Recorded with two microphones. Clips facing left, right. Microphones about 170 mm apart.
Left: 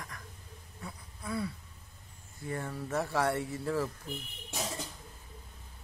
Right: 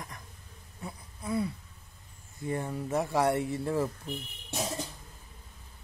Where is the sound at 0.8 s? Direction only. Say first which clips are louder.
Right 4 dB; 20° right (ahead or behind).